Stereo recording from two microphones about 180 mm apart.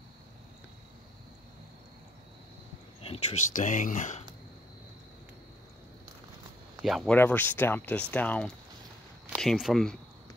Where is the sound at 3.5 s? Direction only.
45° left (ahead or behind).